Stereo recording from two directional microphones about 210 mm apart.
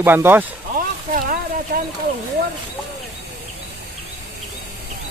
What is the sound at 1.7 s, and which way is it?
Speech, 45° right (ahead or behind).